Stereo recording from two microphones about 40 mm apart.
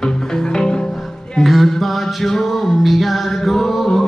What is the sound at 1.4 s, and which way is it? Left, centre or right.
Music, centre.